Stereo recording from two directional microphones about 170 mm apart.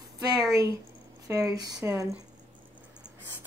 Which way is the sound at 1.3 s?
20° right (ahead or behind).